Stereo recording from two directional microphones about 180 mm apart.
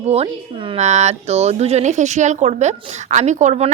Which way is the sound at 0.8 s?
40° right (ahead or behind).